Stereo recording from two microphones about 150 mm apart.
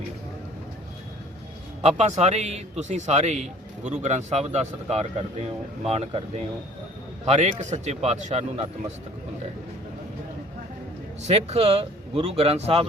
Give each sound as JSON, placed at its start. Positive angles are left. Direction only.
{"t": 1.8, "sound": "a man's voice", "side_deg": -50}
{"t": 11.3, "sound": "a man's voice", "side_deg": -45}